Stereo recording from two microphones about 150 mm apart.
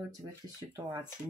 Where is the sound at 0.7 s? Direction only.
30° right (ahead or behind).